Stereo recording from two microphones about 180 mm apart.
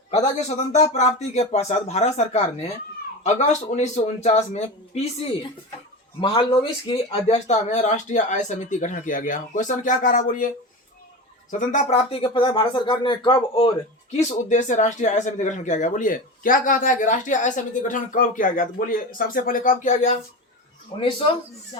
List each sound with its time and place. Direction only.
0.1 s speech: 40° left (ahead or behind)
6.1 s speech: 30° left (ahead or behind); by 10.5 s 45° left (ahead or behind)
11.6 s speech: 40° left (ahead or behind)
14.2 s speech: 40° left (ahead or behind)